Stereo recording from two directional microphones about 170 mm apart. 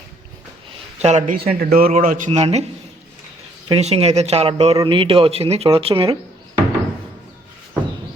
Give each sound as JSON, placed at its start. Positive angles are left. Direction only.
{"t": 1.0, "sound": "a man's voice", "side_deg": -45}
{"t": 1.5, "sound": "a man's voice", "side_deg": -60}
{"t": 2.3, "sound": "speech", "side_deg": -40}
{"t": 3.7, "sound": "speech", "side_deg": -35}